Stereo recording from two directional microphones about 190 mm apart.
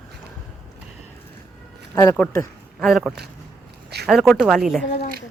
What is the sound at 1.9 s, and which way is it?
Speech, 15° left (ahead or behind).